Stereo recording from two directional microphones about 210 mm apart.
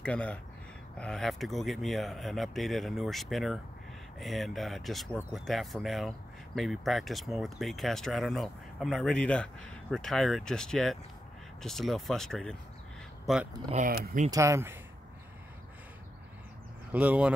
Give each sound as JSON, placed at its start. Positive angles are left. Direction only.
{"t": 0.0, "sound": "speech", "side_deg": 5}
{"t": 13.7, "sound": "speech", "side_deg": -40}
{"t": 14.3, "sound": "speech", "side_deg": -15}
{"t": 16.9, "sound": "speech", "side_deg": -5}